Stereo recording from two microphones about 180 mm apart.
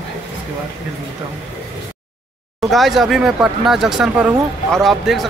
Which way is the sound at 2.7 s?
Centre (ahead or behind).